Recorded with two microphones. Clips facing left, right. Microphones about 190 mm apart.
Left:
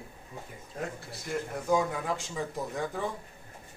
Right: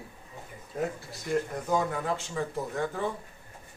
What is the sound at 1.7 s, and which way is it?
Speech, 15° left (ahead or behind).